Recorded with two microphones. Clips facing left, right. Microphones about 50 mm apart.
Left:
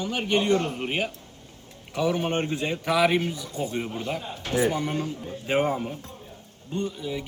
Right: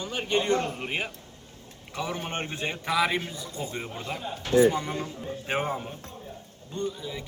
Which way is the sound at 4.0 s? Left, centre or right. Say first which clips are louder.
Left 3 dB; left.